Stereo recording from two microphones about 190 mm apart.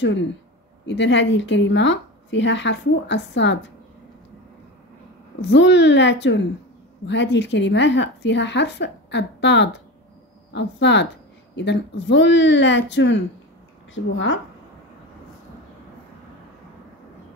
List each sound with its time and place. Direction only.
0.8 s a woman's voice: 70° left (ahead or behind)
5.5 s a woman's voice: 70° left (ahead or behind)